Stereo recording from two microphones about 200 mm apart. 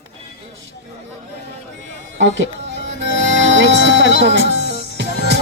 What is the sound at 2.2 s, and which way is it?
Music, 65° right (ahead or behind).